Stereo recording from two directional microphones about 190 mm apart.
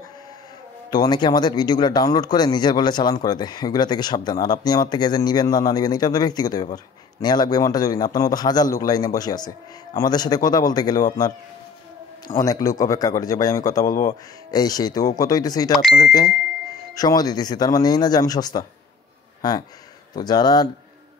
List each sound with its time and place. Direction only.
0.8 s speech: 20° left (ahead or behind)
12.4 s speech: 20° left (ahead or behind)
13.8 s speech: 45° left (ahead or behind)
14.5 s speech: 20° left (ahead or behind)